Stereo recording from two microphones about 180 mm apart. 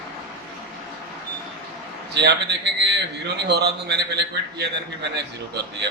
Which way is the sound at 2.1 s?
70° right (ahead or behind).